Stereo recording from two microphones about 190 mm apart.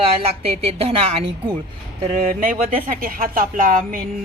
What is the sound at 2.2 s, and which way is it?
Speech, 45° right (ahead or behind).